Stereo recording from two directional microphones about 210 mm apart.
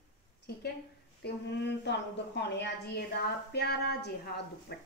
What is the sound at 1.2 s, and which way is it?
A woman's voice, 55° left (ahead or behind).